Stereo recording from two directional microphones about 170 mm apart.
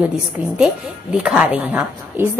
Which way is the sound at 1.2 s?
5° right (ahead or behind).